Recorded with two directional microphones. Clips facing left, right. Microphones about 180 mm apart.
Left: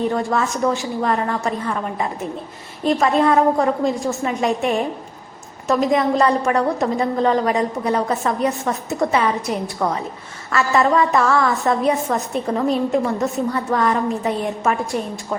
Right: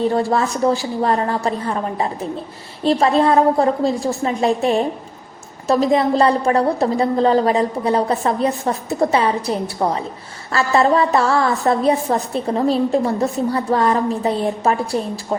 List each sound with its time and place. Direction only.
0.0 s a woman's voice: 35° right (ahead or behind)